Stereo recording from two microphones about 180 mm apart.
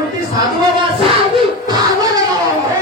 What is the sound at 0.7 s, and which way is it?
Music, 30° right (ahead or behind).